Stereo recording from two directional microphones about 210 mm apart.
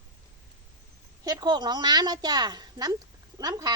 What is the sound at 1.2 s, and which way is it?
A woman's voice, 20° right (ahead or behind).